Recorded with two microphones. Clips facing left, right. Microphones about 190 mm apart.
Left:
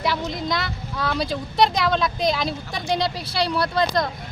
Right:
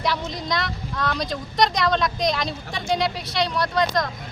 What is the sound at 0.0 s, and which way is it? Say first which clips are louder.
Speech: left 1 dB; centre (ahead or behind).